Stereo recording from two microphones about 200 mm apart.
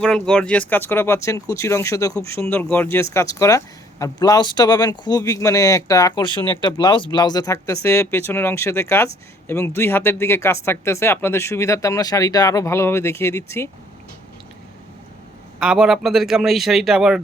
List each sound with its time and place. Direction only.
0.0 s speech: 5° left (ahead or behind)
15.5 s a man's voice: 5° right (ahead or behind)